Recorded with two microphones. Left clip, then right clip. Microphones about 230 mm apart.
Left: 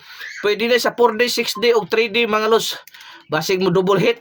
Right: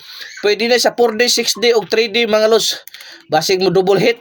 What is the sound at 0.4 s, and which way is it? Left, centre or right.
Speech, centre.